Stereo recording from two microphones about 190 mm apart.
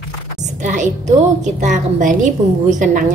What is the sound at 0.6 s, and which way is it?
A woman's voice, 40° right (ahead or behind).